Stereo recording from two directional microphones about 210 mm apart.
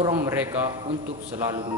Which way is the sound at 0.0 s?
10° right (ahead or behind).